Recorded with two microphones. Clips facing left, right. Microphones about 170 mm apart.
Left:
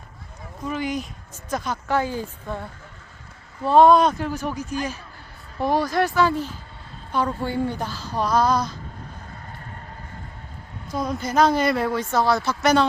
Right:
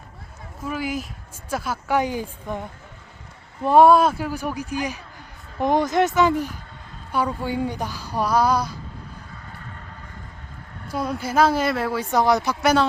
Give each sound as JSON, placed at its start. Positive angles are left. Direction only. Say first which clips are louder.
{"t": 0.6, "sound": "speech", "louder": "left 1 dB", "side_deg": -5}
{"t": 10.9, "sound": "speech", "louder": "even", "side_deg": -10}
{"t": 12.1, "sound": "speech", "louder": "right 3 dB", "side_deg": -15}